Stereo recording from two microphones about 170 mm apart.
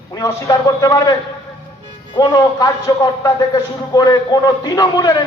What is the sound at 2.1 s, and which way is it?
A man's voice, 25° left (ahead or behind).